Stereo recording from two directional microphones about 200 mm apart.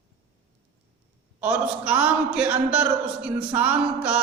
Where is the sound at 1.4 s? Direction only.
5° right (ahead or behind).